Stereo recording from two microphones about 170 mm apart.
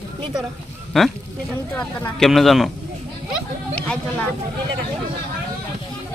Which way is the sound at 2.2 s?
Centre (ahead or behind).